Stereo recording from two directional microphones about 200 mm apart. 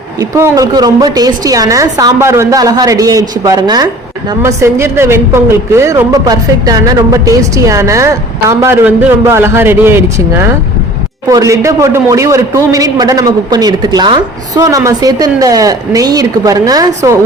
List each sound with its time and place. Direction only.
0.2 s a woman's voice: 15° right (ahead or behind)